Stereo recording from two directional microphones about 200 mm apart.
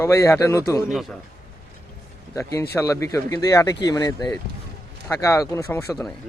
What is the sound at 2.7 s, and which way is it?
A man's voice, 15° left (ahead or behind).